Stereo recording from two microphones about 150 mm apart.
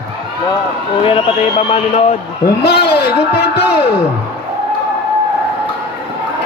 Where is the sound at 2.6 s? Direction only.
90° left.